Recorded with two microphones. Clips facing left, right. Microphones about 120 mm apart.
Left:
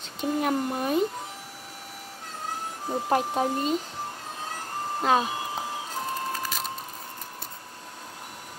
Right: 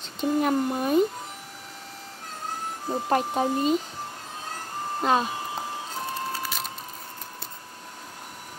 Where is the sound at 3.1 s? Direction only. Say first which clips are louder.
Right 1 dB; centre (ahead or behind).